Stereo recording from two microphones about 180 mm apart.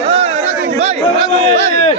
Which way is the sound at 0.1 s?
35° right (ahead or behind).